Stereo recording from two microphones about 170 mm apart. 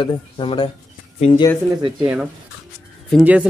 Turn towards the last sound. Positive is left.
turn(degrees=-5)  # may be behind; listen again after turning